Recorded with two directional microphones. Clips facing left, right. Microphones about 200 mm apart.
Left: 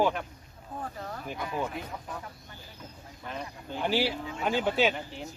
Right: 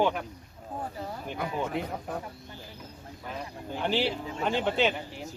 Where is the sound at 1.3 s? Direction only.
60° right (ahead or behind).